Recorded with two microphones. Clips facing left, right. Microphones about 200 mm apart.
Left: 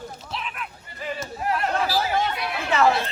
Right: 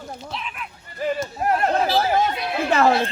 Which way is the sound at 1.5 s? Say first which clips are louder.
Right 4 dB; 45° right (ahead or behind).